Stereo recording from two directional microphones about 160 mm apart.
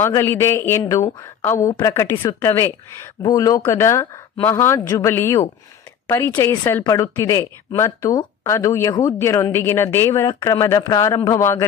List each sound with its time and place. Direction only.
0.0 s a woman's voice: 20° left (ahead or behind)